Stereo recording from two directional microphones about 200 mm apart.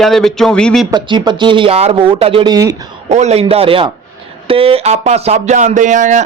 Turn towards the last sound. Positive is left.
turn(degrees=-40)  # may be behind; listen again after turning